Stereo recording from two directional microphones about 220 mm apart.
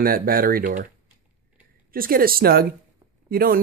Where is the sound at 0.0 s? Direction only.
40° right (ahead or behind).